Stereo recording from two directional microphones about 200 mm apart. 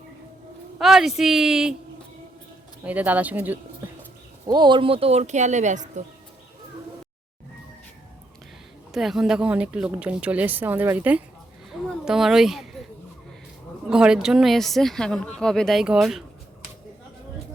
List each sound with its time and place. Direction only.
0.8 s speech: centre (ahead or behind)
2.8 s speech: 10° right (ahead or behind)
4.4 s speech: 20° right (ahead or behind); by 5.9 s 35° right (ahead or behind)
8.9 s speech: centre (ahead or behind)
13.9 s speech: 5° right (ahead or behind)